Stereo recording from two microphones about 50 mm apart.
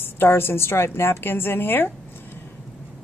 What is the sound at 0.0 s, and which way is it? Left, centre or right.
A woman's voice, left.